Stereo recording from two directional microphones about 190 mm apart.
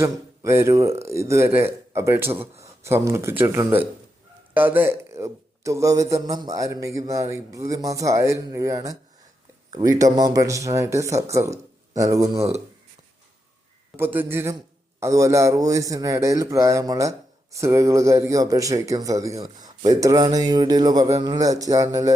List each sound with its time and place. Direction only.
0.0 s speech: 15° right (ahead or behind)
12.4 s speech: 35° right (ahead or behind)
13.9 s speech: 10° right (ahead or behind)